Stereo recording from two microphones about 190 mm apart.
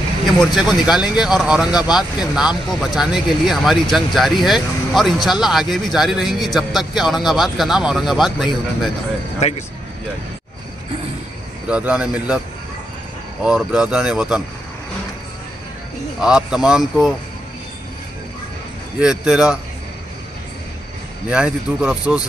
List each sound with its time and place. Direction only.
0.6 s speech: centre (ahead or behind)
11.6 s speech: 5° right (ahead or behind)
13.4 s speech: 5° right (ahead or behind)
16.2 s speech: 5° right (ahead or behind)
18.9 s speech: 5° right (ahead or behind)
21.3 s speech: 5° right (ahead or behind)